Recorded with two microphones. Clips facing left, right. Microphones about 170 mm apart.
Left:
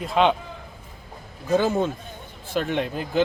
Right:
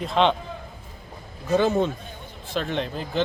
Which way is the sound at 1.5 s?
5° left (ahead or behind).